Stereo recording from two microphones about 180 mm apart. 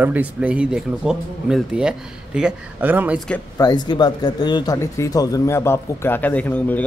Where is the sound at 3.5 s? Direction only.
20° left (ahead or behind).